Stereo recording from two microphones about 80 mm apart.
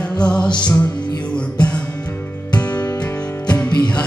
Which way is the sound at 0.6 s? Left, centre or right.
Left.